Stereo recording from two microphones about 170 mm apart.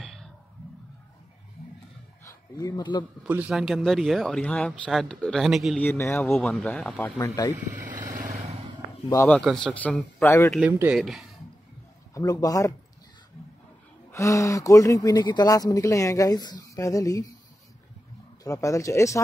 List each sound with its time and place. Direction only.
0.0 s a sound: centre (ahead or behind)
2.2 s speech: 20° left (ahead or behind)
3.3 s speech: 10° right (ahead or behind)
5.9 s speech: 15° left (ahead or behind)
6.5 s speech: 5° left (ahead or behind)
7.2 s speech: 20° left (ahead or behind)
8.1 s vehicle: 50° right (ahead or behind)
9.1 s speech: 15° left (ahead or behind)
10.6 s speech: 10° right (ahead or behind)
12.1 s speech: 20° left (ahead or behind)
14.1 s speech: 20° left (ahead or behind)
18.4 s speech: 20° left (ahead or behind)